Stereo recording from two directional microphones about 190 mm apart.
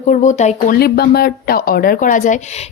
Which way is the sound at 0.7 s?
55° left (ahead or behind).